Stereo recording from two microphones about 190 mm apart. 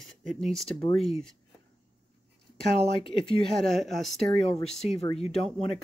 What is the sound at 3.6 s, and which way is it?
Speech, centre (ahead or behind).